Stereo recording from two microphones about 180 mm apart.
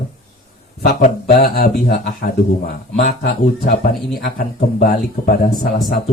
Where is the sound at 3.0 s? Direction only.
45° left (ahead or behind).